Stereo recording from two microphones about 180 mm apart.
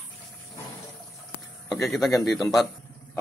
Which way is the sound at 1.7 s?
Centre (ahead or behind).